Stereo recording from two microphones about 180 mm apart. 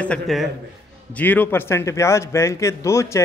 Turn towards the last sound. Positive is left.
turn(degrees=15)  # may be behind; listen again after turning